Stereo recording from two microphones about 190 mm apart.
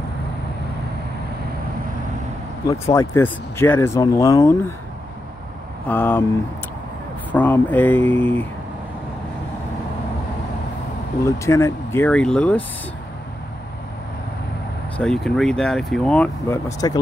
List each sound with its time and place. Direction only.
2.6 s speech: 15° left (ahead or behind)
5.9 s speech: 10° left (ahead or behind)
7.3 s speech: 10° left (ahead or behind)
11.2 s speech: 15° left (ahead or behind)
15.0 s speech: 5° left (ahead or behind)